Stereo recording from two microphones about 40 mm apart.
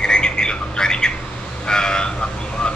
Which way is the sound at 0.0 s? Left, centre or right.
Left.